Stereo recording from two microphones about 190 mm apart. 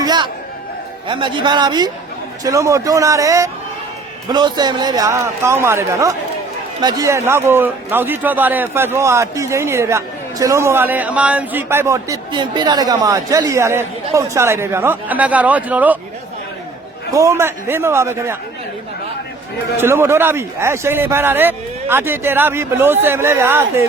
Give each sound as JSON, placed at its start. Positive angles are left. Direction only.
{"t": 0.0, "sound": "chatter", "side_deg": -20}
{"t": 1.0, "sound": "a man's voice", "side_deg": -25}
{"t": 17.1, "sound": "a man's voice", "side_deg": -15}
{"t": 19.7, "sound": "a man's voice", "side_deg": -15}